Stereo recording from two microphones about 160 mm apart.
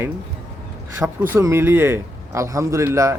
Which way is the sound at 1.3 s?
15° right (ahead or behind).